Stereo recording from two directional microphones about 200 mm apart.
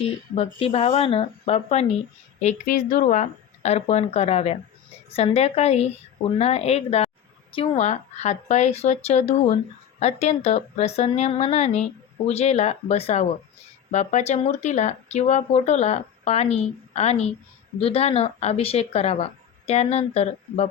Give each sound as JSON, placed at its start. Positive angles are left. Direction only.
{"t": 0.3, "sound": "speech", "side_deg": 30}